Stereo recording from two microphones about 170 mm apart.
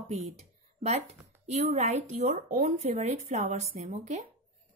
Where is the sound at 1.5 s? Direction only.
45° right (ahead or behind).